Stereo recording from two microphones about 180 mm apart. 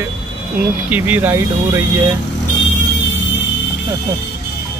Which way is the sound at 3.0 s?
80° left.